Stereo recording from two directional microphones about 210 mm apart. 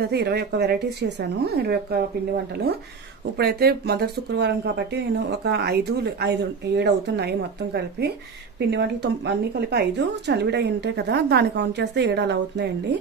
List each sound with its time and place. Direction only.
0.1 s speech: 50° right (ahead or behind)
3.3 s speech: 50° right (ahead or behind)